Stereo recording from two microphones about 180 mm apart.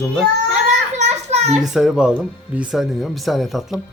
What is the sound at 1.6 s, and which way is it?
Speech, centre (ahead or behind).